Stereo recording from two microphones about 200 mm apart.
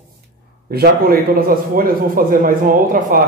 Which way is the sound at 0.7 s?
50° right (ahead or behind).